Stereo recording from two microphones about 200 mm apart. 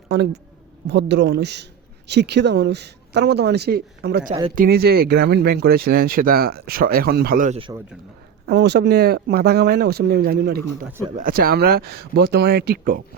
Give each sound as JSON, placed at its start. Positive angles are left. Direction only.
{"t": 0.1, "sound": "speech", "side_deg": -60}
{"t": 8.4, "sound": "speech", "side_deg": -60}